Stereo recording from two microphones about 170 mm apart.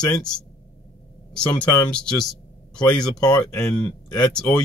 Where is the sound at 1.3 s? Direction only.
10° left (ahead or behind).